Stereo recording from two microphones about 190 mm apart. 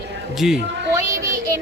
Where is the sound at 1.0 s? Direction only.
15° right (ahead or behind).